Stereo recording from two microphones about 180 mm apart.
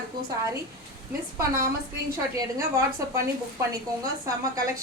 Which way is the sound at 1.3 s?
15° right (ahead or behind).